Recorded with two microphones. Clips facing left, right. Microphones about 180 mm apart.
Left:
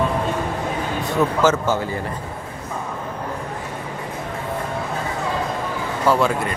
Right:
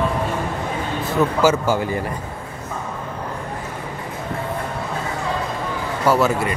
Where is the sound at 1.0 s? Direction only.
5° right (ahead or behind).